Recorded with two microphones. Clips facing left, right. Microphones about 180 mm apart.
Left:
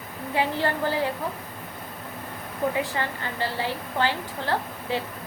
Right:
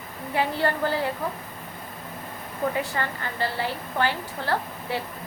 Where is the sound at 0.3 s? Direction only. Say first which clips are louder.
Right 1 dB; 15° left (ahead or behind).